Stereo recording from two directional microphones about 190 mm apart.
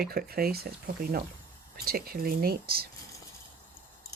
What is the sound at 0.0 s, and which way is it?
Speech, 55° right (ahead or behind).